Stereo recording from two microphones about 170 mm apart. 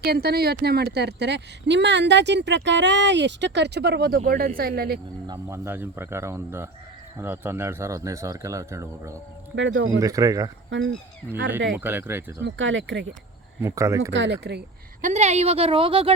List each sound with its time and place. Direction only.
0.0 s speech: 65° right (ahead or behind)
4.3 s speech: 60° right (ahead or behind)
5.2 s speech: 20° right (ahead or behind)
9.6 s speech: 90° right
10.0 s speech: 20° right (ahead or behind)
10.7 s speech: 90° right
11.8 s speech: 10° right (ahead or behind)
12.4 s speech: 90° right
13.6 s speech: 15° right (ahead or behind)
14.1 s speech: 90° right
15.0 s speech: 40° right (ahead or behind)